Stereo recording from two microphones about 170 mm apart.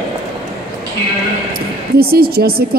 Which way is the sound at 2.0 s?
65° right (ahead or behind).